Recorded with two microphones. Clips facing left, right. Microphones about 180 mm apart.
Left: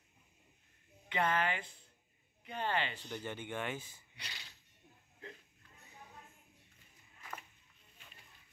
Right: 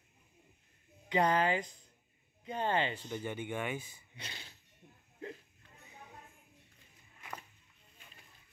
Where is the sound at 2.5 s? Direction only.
20° right (ahead or behind).